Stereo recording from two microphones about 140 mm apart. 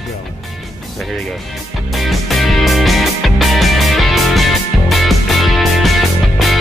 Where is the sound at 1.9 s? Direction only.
Centre (ahead or behind).